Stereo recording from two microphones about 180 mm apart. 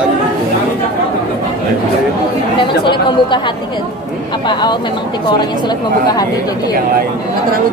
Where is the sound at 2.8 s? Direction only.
25° left (ahead or behind).